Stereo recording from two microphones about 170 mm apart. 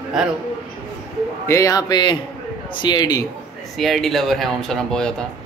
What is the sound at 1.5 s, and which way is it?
A man's voice, 20° left (ahead or behind).